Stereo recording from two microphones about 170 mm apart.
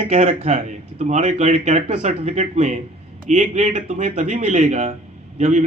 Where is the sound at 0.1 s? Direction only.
45° right (ahead or behind).